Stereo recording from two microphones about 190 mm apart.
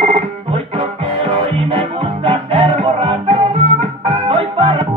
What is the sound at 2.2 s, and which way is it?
Music, 30° right (ahead or behind).